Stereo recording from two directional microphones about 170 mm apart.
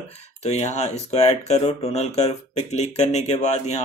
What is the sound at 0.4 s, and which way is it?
Speech, 40° left (ahead or behind).